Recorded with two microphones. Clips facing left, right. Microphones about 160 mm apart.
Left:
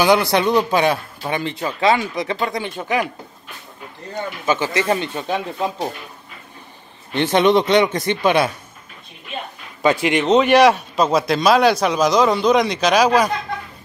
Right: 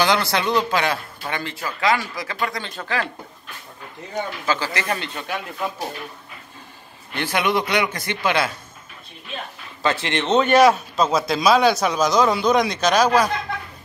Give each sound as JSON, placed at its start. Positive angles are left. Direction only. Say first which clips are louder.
{"t": 0.0, "sound": "a man's voice", "louder": "left 5 dB", "side_deg": 15}
{"t": 4.5, "sound": "a man's voice", "louder": "left 7 dB", "side_deg": 25}
{"t": 7.2, "sound": "a man's voice", "louder": "left 7 dB", "side_deg": 20}
{"t": 9.8, "sound": "a man's voice", "louder": "left 6 dB", "side_deg": 15}
{"t": 10.2, "sound": "a man's voice", "louder": "left 2 dB", "side_deg": 0}